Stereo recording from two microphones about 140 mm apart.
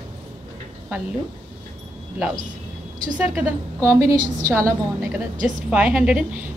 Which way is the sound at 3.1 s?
10° right (ahead or behind).